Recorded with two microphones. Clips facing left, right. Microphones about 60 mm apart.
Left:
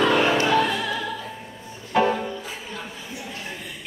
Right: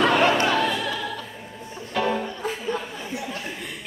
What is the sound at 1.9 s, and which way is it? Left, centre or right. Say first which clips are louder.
Music: left 4 dB; centre.